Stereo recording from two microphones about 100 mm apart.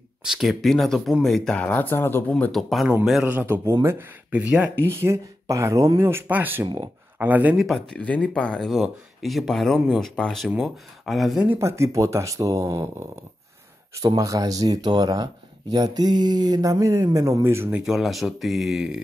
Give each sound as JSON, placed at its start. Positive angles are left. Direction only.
{"t": 0.2, "sound": "speech", "side_deg": -5}
{"t": 2.5, "sound": "speech", "side_deg": 0}
{"t": 3.3, "sound": "speech", "side_deg": -20}
{"t": 4.8, "sound": "speech", "side_deg": -25}
{"t": 7.5, "sound": "speech", "side_deg": 0}
{"t": 7.9, "sound": "speech", "side_deg": 10}
{"t": 11.4, "sound": "speech", "side_deg": -25}
{"t": 13.9, "sound": "speech", "side_deg": -35}
{"t": 17.6, "sound": "speech", "side_deg": -15}
{"t": 17.9, "sound": "speech", "side_deg": 0}